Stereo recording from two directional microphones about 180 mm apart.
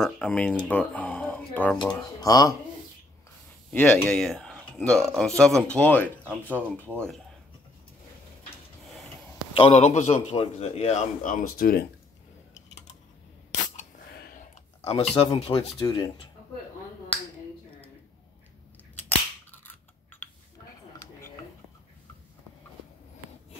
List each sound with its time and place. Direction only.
0.0 s speech: 5° left (ahead or behind)
2.0 s speech: 20° left (ahead or behind)
3.7 s speech: 10° left (ahead or behind)
4.2 s a sound: centre (ahead or behind)
5.1 s speech: 5° left (ahead or behind)
9.6 s a man's voice: 35° left (ahead or behind)
13.7 s a sound: 55° left (ahead or behind)
14.8 s a man's voice: 35° left (ahead or behind)
19.0 s cap gun: 10° left (ahead or behind)